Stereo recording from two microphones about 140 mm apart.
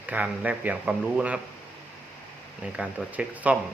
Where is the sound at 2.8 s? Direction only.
5° right (ahead or behind).